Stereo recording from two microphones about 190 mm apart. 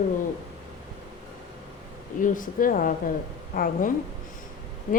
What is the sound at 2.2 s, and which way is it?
A woman's voice, 45° left (ahead or behind).